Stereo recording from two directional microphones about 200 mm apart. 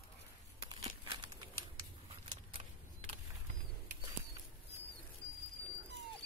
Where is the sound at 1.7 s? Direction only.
25° right (ahead or behind).